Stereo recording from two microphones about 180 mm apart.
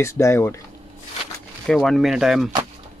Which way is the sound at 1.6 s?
5° left (ahead or behind).